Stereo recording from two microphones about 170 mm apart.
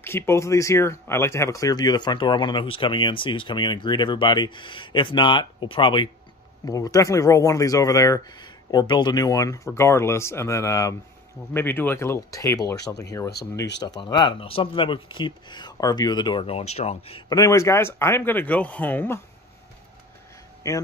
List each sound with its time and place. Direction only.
0.0 s speech: 15° left (ahead or behind); by 17.2 s 40° left (ahead or behind)
17.3 s speech: 20° left (ahead or behind)
20.6 s speech: 20° left (ahead or behind)